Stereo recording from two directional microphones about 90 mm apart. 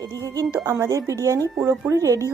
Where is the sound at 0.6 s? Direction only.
35° right (ahead or behind).